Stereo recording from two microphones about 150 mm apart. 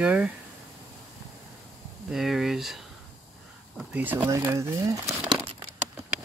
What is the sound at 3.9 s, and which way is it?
Speech, 10° right (ahead or behind).